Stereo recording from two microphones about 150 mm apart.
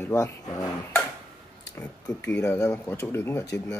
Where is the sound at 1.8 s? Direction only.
15° left (ahead or behind).